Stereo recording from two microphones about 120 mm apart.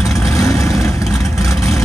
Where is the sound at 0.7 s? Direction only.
Centre (ahead or behind).